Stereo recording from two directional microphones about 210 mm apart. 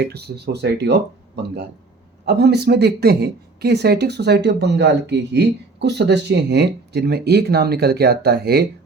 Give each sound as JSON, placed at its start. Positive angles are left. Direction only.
{"t": 0.0, "sound": "speech", "side_deg": -50}